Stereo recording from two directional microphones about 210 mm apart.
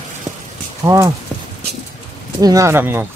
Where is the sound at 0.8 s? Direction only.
15° right (ahead or behind).